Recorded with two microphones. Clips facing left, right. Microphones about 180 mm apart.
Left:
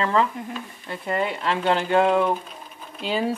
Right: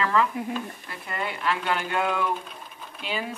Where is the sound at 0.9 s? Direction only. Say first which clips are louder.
Left 12 dB; 25° left (ahead or behind).